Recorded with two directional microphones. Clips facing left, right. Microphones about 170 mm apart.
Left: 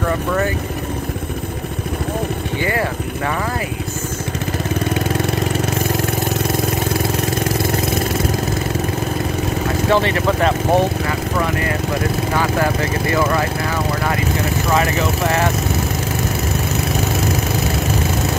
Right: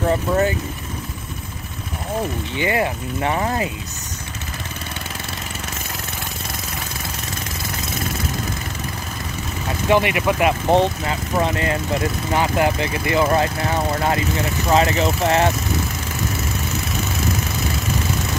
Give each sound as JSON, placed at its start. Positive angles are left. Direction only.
{"t": 2.6, "sound": "speech", "side_deg": -20}
{"t": 9.8, "sound": "speech", "side_deg": -15}
{"t": 11.1, "sound": "speech", "side_deg": -25}